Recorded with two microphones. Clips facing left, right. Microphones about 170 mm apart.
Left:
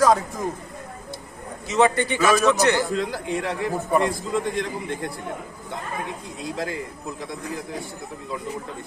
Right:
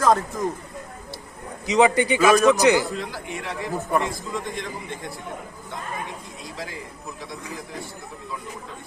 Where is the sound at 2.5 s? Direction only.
15° right (ahead or behind).